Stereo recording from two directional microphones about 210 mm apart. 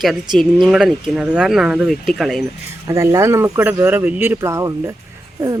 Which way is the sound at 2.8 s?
15° right (ahead or behind).